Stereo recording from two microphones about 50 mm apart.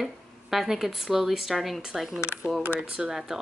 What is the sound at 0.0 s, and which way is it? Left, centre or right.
Speech, centre.